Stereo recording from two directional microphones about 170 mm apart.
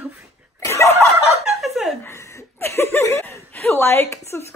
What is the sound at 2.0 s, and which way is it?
Chuckle, 15° left (ahead or behind).